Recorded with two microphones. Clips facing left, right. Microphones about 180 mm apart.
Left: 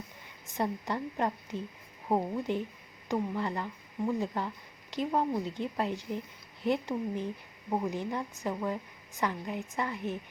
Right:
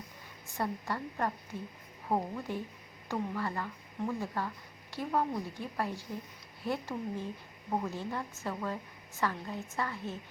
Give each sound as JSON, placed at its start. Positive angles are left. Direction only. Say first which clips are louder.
{"t": 0.4, "sound": "a woman's voice", "louder": "left 3 dB", "side_deg": 20}